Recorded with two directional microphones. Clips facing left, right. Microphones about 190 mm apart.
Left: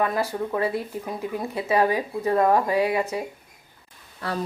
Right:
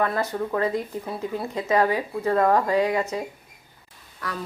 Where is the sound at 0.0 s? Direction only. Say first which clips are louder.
Even; 15° left (ahead or behind).